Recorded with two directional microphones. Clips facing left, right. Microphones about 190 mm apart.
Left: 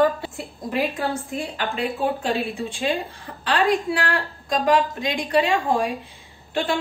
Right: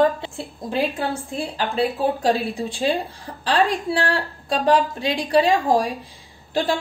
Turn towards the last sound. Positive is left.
turn(degrees=-35)  # may be behind; listen again after turning